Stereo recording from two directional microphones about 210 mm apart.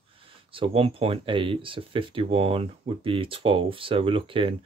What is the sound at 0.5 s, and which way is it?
Speech, 25° right (ahead or behind).